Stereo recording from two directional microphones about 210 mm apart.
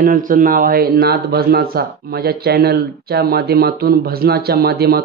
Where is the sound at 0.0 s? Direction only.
40° right (ahead or behind).